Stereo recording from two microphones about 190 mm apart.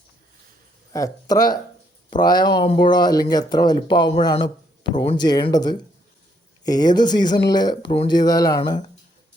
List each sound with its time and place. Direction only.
0.9 s speech: 20° left (ahead or behind)